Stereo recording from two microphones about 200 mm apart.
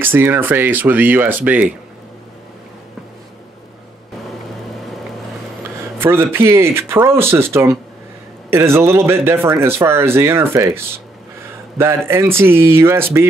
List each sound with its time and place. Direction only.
0.0 s speech: 10° right (ahead or behind)
5.9 s speech: 10° right (ahead or behind)
12.1 s speech: 10° right (ahead or behind)